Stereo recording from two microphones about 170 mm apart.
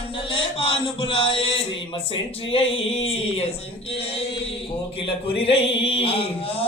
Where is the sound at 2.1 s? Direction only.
35° left (ahead or behind).